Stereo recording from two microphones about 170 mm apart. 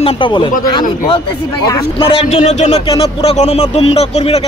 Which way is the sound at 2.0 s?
35° left (ahead or behind).